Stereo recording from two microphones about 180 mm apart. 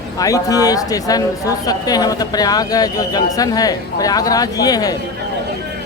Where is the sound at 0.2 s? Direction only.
20° left (ahead or behind).